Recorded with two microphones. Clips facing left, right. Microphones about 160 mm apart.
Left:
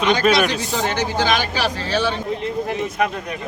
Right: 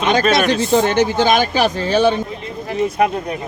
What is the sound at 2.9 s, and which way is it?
Speech, 30° right (ahead or behind).